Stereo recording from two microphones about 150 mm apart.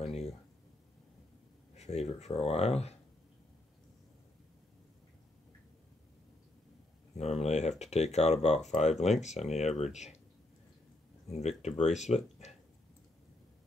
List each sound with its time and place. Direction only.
1.8 s speech: 45° left (ahead or behind)
7.2 s speech: 45° left (ahead or behind)
11.2 s speech: 45° left (ahead or behind)